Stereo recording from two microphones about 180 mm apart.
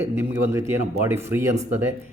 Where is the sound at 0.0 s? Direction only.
15° right (ahead or behind).